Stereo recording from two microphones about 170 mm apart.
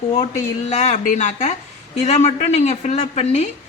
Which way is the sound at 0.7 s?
40° left (ahead or behind).